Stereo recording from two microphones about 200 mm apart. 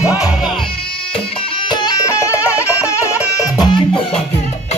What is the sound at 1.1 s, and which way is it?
Music, 25° left (ahead or behind).